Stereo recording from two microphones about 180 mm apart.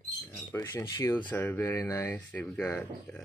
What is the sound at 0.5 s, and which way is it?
Speech, 20° left (ahead or behind).